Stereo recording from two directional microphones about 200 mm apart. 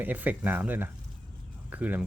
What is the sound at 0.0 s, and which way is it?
Speech, 10° right (ahead or behind).